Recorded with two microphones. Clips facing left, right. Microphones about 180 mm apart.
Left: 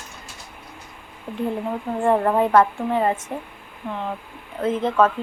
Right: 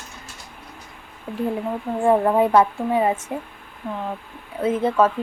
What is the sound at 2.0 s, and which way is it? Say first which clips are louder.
A woman's voice: right 2 dB; 5° right (ahead or behind).